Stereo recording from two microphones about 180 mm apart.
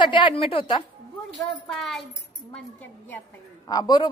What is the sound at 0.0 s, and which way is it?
Speech, 25° left (ahead or behind).